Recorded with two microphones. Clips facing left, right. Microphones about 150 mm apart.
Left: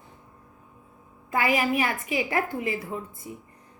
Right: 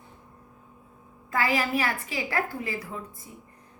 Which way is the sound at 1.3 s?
15° left (ahead or behind).